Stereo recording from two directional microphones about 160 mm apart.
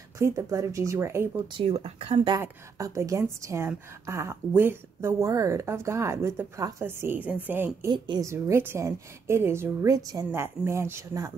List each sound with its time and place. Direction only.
0.2 s a woman's voice: 20° right (ahead or behind)
1.6 s speech: 40° right (ahead or behind)
2.4 s a woman's voice: 20° right (ahead or behind)
7.9 s a woman's voice: 25° right (ahead or behind)